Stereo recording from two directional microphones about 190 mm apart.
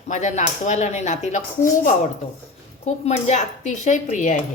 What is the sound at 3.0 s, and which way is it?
Speech, 35° left (ahead or behind).